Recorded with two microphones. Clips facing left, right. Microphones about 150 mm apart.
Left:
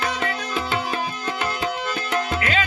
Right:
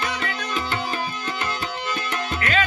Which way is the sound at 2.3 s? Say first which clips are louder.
Even; 25° left (ahead or behind).